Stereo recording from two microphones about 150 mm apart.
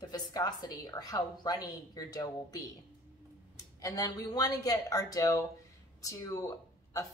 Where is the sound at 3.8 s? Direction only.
25° left (ahead or behind).